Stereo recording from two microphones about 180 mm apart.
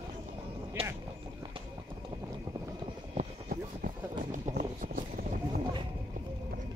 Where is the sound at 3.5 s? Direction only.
50° right (ahead or behind).